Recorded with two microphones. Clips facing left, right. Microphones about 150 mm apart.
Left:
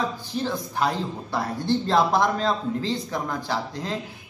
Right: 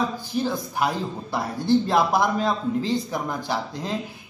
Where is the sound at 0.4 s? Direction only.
10° right (ahead or behind).